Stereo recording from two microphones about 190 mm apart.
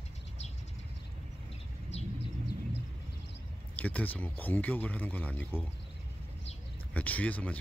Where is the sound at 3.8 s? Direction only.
5° left (ahead or behind).